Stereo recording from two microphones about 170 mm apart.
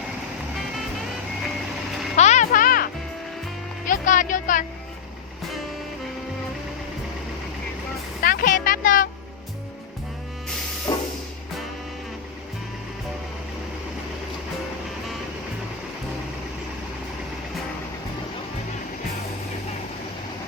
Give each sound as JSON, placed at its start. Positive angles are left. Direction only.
{"t": 2.1, "sound": "music", "side_deg": 45}
{"t": 8.2, "sound": "music", "side_deg": 55}
{"t": 10.9, "sound": "vehicle", "side_deg": 25}